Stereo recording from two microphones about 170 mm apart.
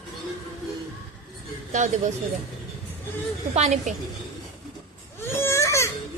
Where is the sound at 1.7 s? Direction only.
45° right (ahead or behind).